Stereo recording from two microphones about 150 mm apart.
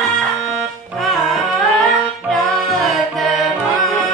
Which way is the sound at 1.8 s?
Centre (ahead or behind).